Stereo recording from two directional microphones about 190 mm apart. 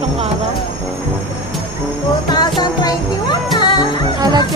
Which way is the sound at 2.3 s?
20° left (ahead or behind).